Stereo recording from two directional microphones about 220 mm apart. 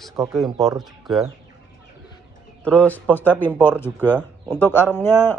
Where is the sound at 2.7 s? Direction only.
5° left (ahead or behind).